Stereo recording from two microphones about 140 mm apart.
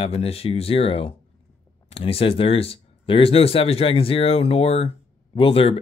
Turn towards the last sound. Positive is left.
turn(degrees=40)  # may be behind; listen again after turning